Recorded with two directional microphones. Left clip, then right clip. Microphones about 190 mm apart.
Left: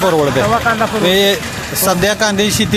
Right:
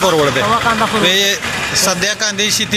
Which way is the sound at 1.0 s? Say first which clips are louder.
Left 4 dB; 15° left (ahead or behind).